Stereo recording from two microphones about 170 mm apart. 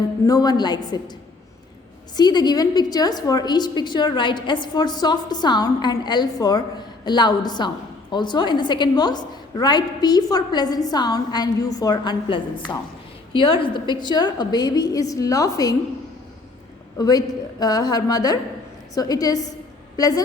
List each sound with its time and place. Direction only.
0.3 s a woman's voice: 20° left (ahead or behind)
2.1 s a woman's voice: 25° left (ahead or behind)
17.0 s a woman's voice: 20° left (ahead or behind)